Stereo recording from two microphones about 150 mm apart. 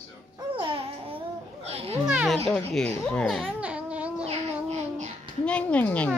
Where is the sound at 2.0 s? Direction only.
5° right (ahead or behind).